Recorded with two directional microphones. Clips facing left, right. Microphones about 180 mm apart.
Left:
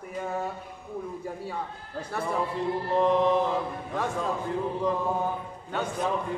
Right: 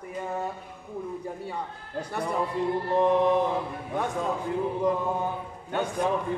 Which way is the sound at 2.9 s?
15° right (ahead or behind).